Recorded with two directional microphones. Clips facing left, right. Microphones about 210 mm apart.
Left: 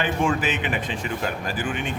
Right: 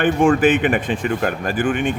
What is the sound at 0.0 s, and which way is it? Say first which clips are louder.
Speech: right 9 dB; 50° right (ahead or behind).